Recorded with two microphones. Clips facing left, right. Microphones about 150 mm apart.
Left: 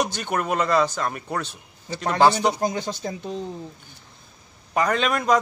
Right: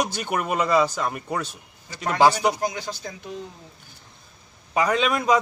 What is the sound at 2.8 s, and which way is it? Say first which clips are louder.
Speech: left 5 dB; 30° left (ahead or behind).